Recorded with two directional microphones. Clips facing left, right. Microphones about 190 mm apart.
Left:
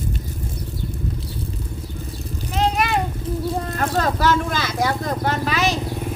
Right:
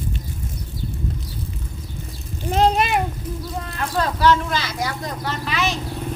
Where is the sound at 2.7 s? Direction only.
20° right (ahead or behind).